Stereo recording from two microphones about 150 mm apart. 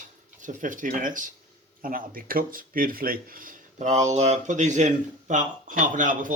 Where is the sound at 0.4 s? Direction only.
60° right (ahead or behind).